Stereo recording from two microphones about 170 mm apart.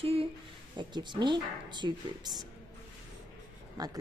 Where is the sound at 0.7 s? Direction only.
25° right (ahead or behind).